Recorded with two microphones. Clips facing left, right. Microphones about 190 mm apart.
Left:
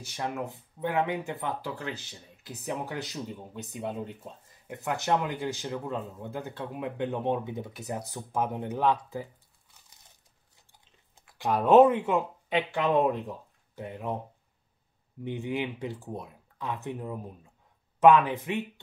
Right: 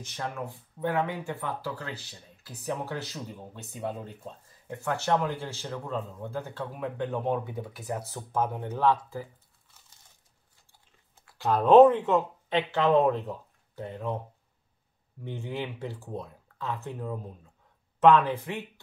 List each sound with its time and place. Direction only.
0.0 s speech: 15° left (ahead or behind)
10.7 s speech: 15° left (ahead or behind)
15.2 s speech: 15° left (ahead or behind)